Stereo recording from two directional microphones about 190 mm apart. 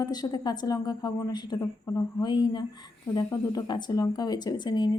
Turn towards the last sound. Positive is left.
turn(degrees=25)  # may be behind; listen again after turning